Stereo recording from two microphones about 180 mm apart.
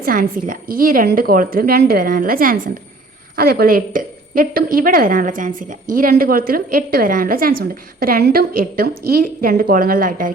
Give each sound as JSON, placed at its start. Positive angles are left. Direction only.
{"t": 0.0, "sound": "a woman's voice", "side_deg": -50}